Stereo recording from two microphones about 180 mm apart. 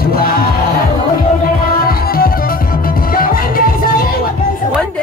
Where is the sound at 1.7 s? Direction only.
55° left (ahead or behind).